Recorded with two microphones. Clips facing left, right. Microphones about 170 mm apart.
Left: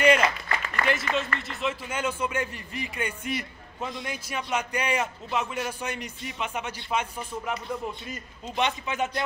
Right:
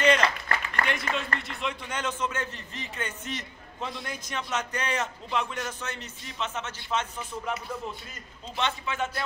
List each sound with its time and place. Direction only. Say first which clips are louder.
0.0 s applause: left 2 dB; 10° left (ahead or behind)
0.8 s a man's voice: left 6 dB; centre (ahead or behind)
8.5 s a man's voice: left 3 dB; 15° left (ahead or behind)